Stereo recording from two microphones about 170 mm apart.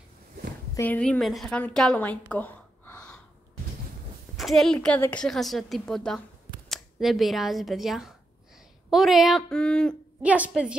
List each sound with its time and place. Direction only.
0.7 s a woman's voice: 10° left (ahead or behind)
4.4 s a woman's voice: centre (ahead or behind)
10.2 s a woman's voice: 10° right (ahead or behind)